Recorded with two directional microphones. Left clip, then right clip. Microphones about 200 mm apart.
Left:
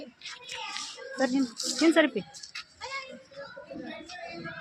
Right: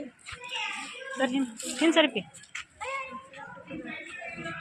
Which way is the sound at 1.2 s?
10° left (ahead or behind).